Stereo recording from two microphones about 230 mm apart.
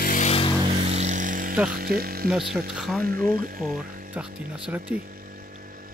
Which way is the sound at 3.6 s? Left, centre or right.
Centre.